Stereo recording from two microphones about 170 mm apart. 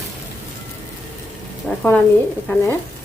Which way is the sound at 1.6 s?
10° left (ahead or behind).